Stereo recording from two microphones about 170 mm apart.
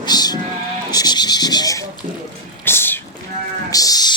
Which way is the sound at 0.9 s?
25° left (ahead or behind).